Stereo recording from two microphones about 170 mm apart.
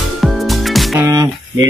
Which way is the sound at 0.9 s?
20° right (ahead or behind).